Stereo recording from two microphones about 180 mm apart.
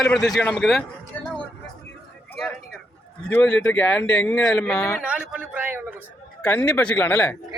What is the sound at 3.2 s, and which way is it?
A man's voice, 5° left (ahead or behind).